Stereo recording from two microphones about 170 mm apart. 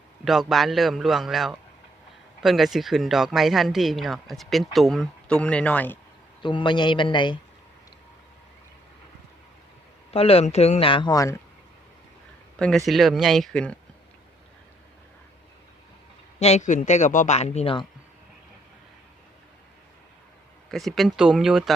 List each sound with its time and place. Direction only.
0.3 s speech: centre (ahead or behind)
6.4 s speech: 30° left (ahead or behind)
10.1 s speech: 35° left (ahead or behind)
12.5 s speech: 5° left (ahead or behind)
16.4 s speech: 40° left (ahead or behind)
20.7 s speech: centre (ahead or behind)